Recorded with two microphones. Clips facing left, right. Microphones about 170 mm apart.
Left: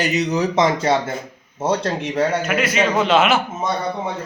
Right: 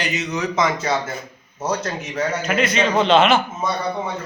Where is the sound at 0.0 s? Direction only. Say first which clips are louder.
Left 5 dB; 40° left (ahead or behind).